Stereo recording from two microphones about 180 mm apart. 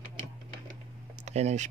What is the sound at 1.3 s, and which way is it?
Speech, 40° right (ahead or behind).